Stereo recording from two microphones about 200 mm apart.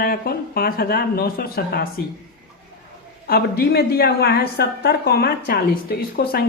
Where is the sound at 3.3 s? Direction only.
50° left (ahead or behind).